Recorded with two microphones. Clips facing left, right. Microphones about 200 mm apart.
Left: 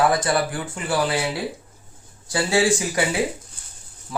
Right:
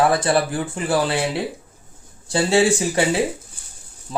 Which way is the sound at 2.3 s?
25° right (ahead or behind).